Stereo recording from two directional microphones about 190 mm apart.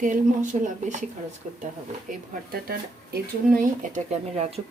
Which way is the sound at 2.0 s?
55° right (ahead or behind).